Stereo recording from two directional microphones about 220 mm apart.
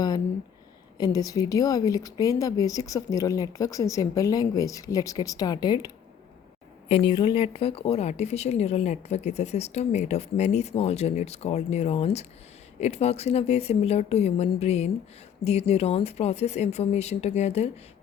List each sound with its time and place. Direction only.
0.9 s a woman's voice: 15° left (ahead or behind)